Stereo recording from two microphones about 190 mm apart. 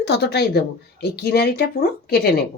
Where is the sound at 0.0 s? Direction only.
65° left (ahead or behind).